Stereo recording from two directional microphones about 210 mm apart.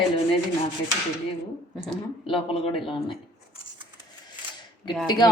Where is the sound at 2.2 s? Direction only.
25° left (ahead or behind).